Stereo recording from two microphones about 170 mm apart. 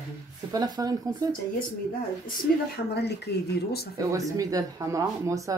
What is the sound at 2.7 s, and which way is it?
Speech, 75° left (ahead or behind).